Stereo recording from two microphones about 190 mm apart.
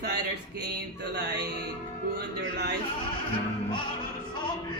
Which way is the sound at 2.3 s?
65° right (ahead or behind).